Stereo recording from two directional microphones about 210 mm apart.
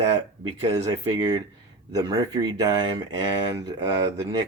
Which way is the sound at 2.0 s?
20° right (ahead or behind).